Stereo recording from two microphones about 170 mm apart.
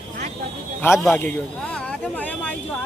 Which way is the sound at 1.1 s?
10° left (ahead or behind).